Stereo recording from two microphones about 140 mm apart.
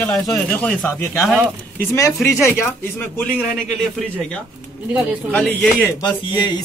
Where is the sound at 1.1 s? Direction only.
Centre (ahead or behind).